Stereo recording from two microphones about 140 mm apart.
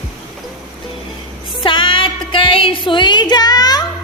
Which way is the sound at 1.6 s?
35° left (ahead or behind).